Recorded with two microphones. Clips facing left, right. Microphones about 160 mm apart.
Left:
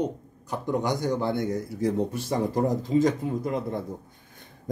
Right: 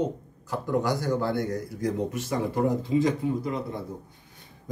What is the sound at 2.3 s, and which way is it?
Speech, 40° left (ahead or behind).